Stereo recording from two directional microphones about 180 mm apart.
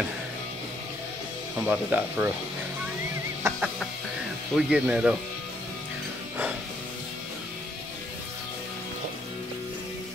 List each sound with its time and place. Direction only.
1.7 s speech: 10° right (ahead or behind)
3.4 s music: 15° right (ahead or behind)
4.6 s speech: 5° right (ahead or behind)